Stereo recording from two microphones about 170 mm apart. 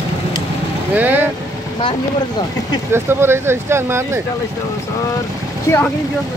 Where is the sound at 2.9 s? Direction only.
15° right (ahead or behind).